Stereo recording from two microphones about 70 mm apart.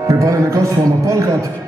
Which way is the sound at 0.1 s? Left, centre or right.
Right.